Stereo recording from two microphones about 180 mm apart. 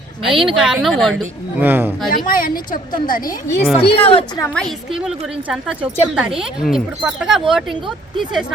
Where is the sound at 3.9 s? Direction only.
30° left (ahead or behind).